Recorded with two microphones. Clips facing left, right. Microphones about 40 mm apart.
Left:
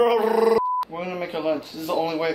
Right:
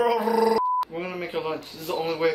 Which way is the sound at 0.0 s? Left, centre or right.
Left.